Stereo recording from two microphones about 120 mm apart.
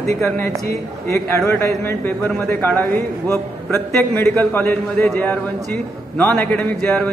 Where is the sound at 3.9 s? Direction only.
15° left (ahead or behind).